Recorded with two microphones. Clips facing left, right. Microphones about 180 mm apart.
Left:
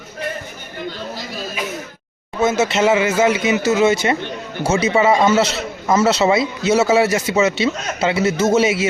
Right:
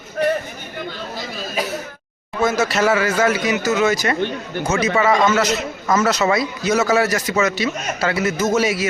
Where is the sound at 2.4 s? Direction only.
20° left (ahead or behind).